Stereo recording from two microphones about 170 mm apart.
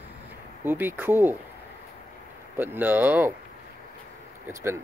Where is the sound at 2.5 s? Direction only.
10° right (ahead or behind).